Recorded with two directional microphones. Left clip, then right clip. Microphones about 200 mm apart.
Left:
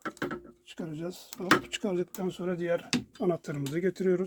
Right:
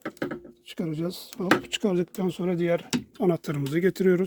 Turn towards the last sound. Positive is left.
turn(degrees=-50)  # may be behind; listen again after turning